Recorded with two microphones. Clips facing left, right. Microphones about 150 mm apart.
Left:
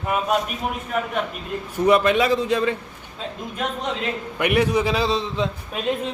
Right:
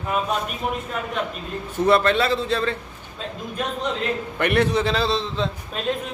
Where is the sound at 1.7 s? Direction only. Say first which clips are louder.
Left 1 dB; 10° left (ahead or behind).